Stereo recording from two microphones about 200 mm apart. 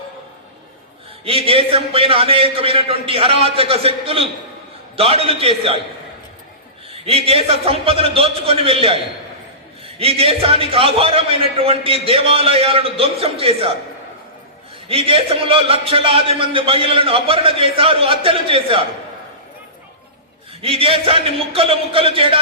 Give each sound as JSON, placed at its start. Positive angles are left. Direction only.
{"t": 1.2, "sound": "a man's voice", "side_deg": -30}
{"t": 6.9, "sound": "a man's voice", "side_deg": -30}
{"t": 14.8, "sound": "a man's voice", "side_deg": -25}
{"t": 20.6, "sound": "a man's voice", "side_deg": -30}